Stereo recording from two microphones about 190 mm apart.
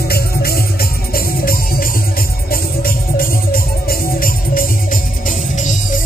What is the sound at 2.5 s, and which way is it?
Music, 50° left (ahead or behind).